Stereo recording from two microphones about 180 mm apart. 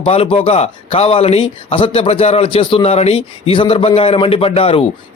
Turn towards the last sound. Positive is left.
turn(degrees=30)  # may be behind; listen again after turning